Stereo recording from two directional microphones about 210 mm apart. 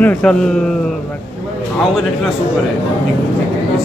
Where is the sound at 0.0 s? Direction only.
5° left (ahead or behind).